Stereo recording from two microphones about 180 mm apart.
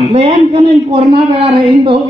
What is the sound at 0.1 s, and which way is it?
A man's voice, 35° right (ahead or behind).